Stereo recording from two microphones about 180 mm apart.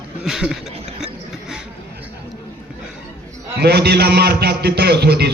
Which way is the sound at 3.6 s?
60° right (ahead or behind).